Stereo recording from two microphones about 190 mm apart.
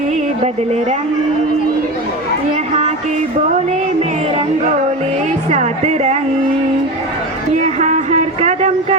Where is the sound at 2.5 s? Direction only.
35° right (ahead or behind).